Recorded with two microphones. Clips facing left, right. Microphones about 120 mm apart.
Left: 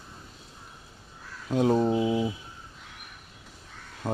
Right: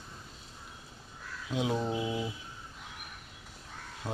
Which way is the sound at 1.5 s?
45° left (ahead or behind).